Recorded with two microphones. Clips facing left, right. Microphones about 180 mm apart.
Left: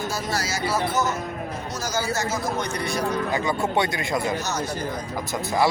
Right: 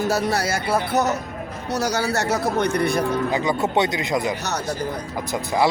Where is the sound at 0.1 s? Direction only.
65° right (ahead or behind).